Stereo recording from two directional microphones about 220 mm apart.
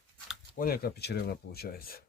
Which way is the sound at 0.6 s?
45° left (ahead or behind).